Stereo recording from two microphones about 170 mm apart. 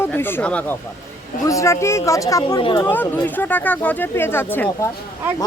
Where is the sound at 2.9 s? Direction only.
10° left (ahead or behind).